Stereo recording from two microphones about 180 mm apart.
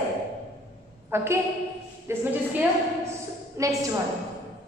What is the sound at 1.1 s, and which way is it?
A woman's voice, 15° right (ahead or behind).